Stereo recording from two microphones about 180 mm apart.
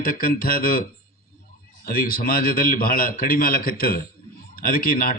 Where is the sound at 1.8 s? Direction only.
55° left (ahead or behind).